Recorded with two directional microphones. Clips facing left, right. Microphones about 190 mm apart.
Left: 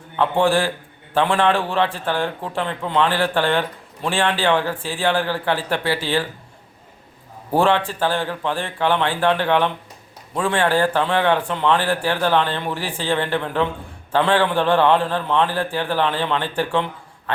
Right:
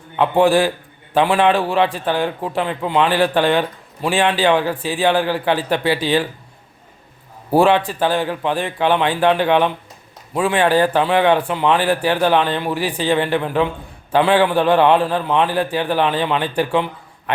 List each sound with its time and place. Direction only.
0.2 s a man's voice: 15° right (ahead or behind)
7.5 s a man's voice: 15° right (ahead or behind)